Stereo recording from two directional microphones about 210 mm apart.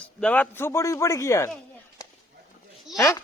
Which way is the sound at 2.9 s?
15° left (ahead or behind).